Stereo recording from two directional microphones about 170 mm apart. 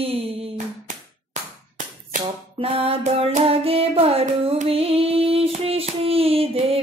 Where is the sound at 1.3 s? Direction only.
45° right (ahead or behind).